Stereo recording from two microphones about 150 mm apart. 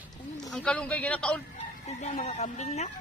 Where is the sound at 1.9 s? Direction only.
50° left (ahead or behind).